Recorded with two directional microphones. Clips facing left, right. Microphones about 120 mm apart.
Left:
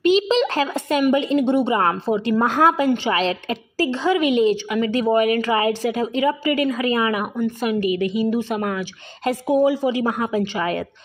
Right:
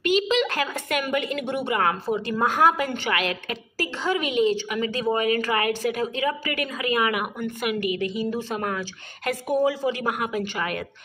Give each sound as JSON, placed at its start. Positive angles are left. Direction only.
{"t": 0.1, "sound": "a woman's voice", "side_deg": 30}
{"t": 5.1, "sound": "speech", "side_deg": -25}
{"t": 5.4, "sound": "a woman's voice", "side_deg": 25}
{"t": 8.1, "sound": "a woman's voice", "side_deg": 20}